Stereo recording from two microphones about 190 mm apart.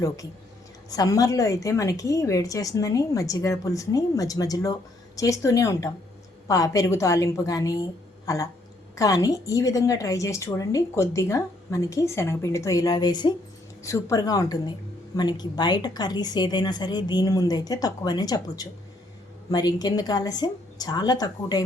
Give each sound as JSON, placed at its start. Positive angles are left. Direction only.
{"t": 0.9, "sound": "a woman's voice", "side_deg": 20}